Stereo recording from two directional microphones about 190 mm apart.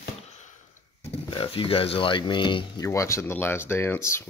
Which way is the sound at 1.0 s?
30° left (ahead or behind).